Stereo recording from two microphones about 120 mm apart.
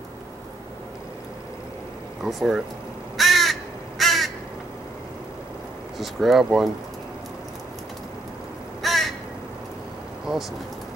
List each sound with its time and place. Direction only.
2.2 s speech: 5° right (ahead or behind)
3.2 s crow: centre (ahead or behind)
5.9 s speech: centre (ahead or behind)
8.8 s crow: centre (ahead or behind)